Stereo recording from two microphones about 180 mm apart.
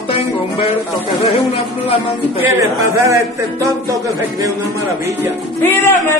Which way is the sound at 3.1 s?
15° right (ahead or behind).